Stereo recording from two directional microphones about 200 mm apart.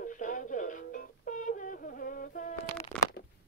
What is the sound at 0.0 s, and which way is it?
Music, 40° left (ahead or behind).